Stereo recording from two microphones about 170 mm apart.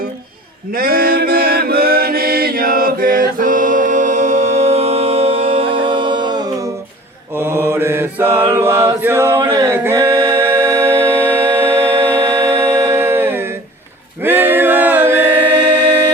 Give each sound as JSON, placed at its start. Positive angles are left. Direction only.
{"t": 0.7, "sound": "music", "side_deg": -60}
{"t": 7.3, "sound": "mantra", "side_deg": -15}
{"t": 9.5, "sound": "music", "side_deg": -15}